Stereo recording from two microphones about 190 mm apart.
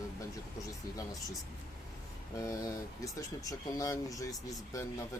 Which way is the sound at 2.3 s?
15° left (ahead or behind).